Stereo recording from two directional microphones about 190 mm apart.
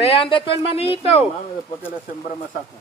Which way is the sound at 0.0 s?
30° left (ahead or behind).